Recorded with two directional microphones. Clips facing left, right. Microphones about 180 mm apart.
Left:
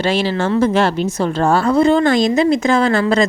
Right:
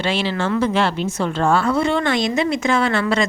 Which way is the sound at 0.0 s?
40° left (ahead or behind).